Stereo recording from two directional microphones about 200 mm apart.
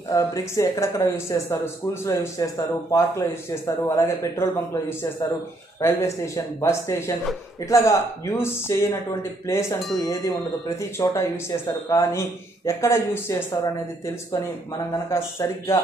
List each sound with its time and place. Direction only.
0.1 s speech: 15° left (ahead or behind)
15.0 s speech: 15° left (ahead or behind)